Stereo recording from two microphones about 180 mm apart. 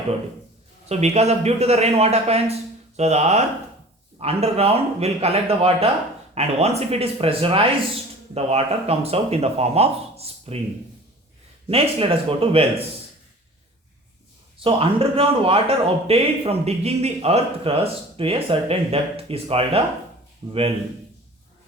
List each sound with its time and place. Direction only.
0.9 s speech: 35° right (ahead or behind)
11.7 s speech: 30° right (ahead or behind)
14.6 s speech: 30° right (ahead or behind)